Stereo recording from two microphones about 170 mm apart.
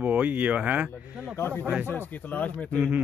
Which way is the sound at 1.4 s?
10° left (ahead or behind).